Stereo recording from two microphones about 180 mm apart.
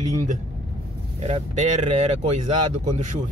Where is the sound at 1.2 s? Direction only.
35° right (ahead or behind).